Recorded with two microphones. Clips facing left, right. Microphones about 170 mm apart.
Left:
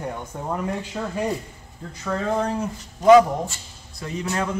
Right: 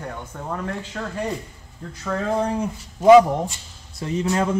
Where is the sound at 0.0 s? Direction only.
15° left (ahead or behind).